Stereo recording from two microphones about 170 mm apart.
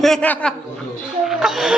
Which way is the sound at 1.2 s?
Centre (ahead or behind).